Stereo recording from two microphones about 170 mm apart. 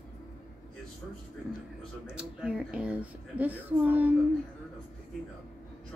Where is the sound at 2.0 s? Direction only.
5° right (ahead or behind).